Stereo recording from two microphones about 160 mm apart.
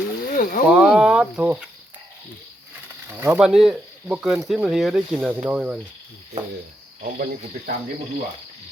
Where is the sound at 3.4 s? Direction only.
5° right (ahead or behind).